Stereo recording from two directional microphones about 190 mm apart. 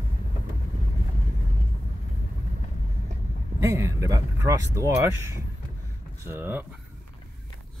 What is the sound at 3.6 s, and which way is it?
Speech, 15° right (ahead or behind).